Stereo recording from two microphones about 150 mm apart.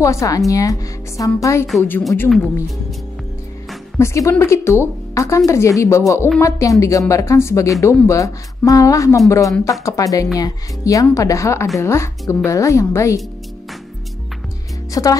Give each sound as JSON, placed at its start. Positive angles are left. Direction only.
{"t": 0.0, "sound": "a woman's voice", "side_deg": 20}
{"t": 4.0, "sound": "a woman's voice", "side_deg": 20}
{"t": 14.9, "sound": "speech", "side_deg": 25}